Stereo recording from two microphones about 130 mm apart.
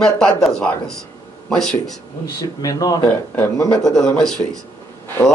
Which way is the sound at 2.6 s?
25° left (ahead or behind).